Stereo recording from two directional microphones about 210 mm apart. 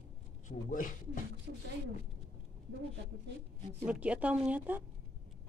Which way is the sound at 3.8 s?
5° right (ahead or behind).